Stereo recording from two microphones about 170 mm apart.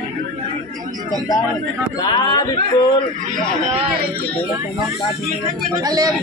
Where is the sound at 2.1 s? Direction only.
25° left (ahead or behind).